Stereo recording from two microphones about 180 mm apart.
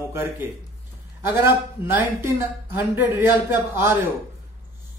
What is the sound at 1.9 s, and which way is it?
Speech, 10° right (ahead or behind).